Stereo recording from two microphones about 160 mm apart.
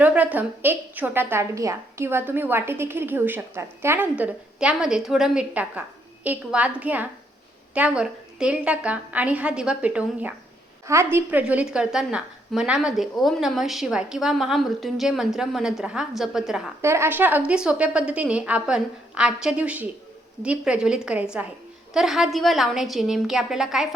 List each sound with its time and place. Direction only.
0.0 s a woman's voice: 10° right (ahead or behind)
16.8 s a woman's voice: 15° right (ahead or behind)